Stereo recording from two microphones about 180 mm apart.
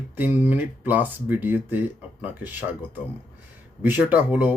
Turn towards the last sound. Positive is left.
turn(degrees=-10)  # may be behind; listen again after turning